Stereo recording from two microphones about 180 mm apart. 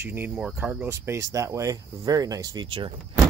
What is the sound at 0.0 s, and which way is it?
Speech, 10° right (ahead or behind).